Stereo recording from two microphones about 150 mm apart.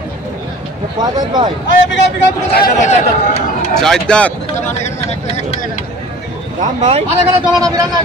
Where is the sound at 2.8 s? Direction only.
50° left (ahead or behind).